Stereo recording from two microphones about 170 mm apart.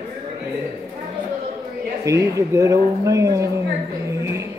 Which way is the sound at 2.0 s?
20° right (ahead or behind).